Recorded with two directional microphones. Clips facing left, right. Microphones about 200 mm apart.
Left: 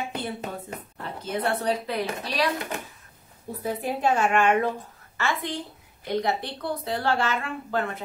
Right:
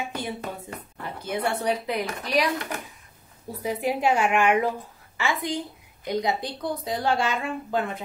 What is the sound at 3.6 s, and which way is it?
Speech, 15° right (ahead or behind).